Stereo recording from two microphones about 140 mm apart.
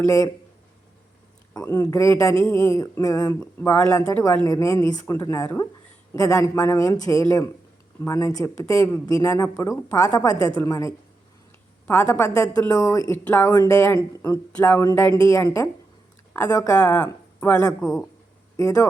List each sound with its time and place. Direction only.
0.0 s speech: 25° left (ahead or behind)
1.5 s speech: 20° left (ahead or behind)
16.8 s speech: 10° left (ahead or behind)
17.8 s speech: 25° left (ahead or behind)